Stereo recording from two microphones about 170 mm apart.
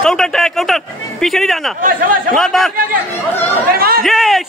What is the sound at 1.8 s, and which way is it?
Speech, 55° right (ahead or behind).